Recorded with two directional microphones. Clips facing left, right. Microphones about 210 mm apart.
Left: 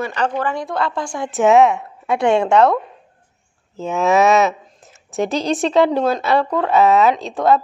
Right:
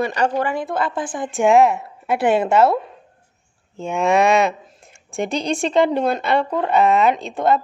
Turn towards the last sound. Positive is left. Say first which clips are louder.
# left 2 dB
turn(degrees=0)  # may be behind; listen again after turning